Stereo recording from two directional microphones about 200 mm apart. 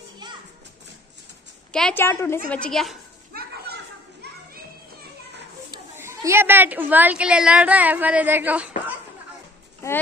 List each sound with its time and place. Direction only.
0.2 s children playing: 20° right (ahead or behind)
1.7 s a woman's voice: 5° left (ahead or behind)
3.3 s children playing: 55° right (ahead or behind)
5.7 s a woman's voice: 15° right (ahead or behind)